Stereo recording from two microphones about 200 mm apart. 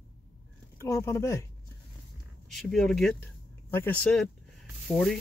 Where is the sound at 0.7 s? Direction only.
15° left (ahead or behind).